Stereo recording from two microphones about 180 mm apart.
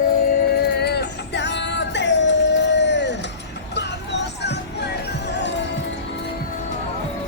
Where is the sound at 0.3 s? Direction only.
60° left (ahead or behind).